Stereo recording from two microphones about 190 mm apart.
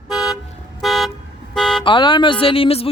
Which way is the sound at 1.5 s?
Centre (ahead or behind).